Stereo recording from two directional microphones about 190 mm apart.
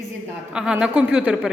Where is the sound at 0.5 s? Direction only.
5° right (ahead or behind).